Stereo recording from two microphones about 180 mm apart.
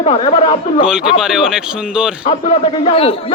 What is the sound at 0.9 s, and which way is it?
Speech, 5° right (ahead or behind).